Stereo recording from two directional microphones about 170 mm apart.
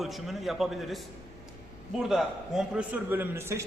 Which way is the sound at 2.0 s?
Centre (ahead or behind).